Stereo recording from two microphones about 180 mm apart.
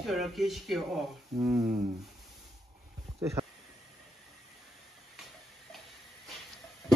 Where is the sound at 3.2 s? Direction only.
15° right (ahead or behind).